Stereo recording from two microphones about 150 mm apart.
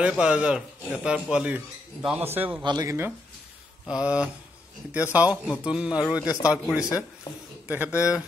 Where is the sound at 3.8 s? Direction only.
5° right (ahead or behind).